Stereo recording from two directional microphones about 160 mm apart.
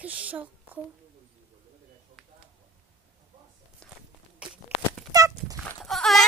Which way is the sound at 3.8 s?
5° left (ahead or behind).